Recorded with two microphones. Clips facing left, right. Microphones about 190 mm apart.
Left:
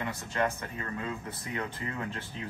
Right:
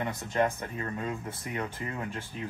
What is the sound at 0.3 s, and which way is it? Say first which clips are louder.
Speech: right 3 dB; 20° right (ahead or behind).